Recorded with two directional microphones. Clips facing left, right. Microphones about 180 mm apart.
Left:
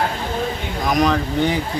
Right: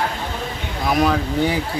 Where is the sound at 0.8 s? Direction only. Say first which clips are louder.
Even; 5° right (ahead or behind).